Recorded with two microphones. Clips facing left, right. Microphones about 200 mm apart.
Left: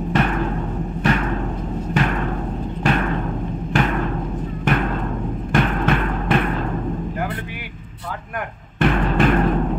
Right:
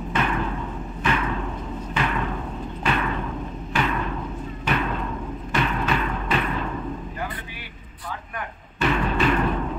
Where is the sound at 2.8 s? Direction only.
45° left (ahead or behind).